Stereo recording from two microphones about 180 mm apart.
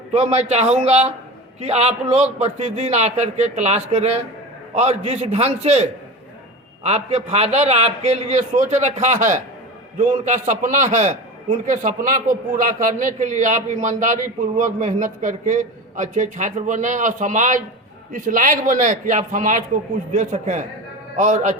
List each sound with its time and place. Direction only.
0.1 s a man's voice: 35° right (ahead or behind)